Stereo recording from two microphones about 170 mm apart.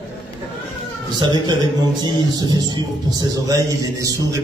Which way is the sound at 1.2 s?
25° right (ahead or behind).